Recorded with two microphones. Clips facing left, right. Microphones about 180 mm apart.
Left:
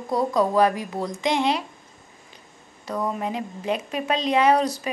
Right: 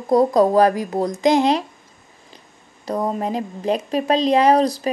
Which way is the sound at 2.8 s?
35° right (ahead or behind).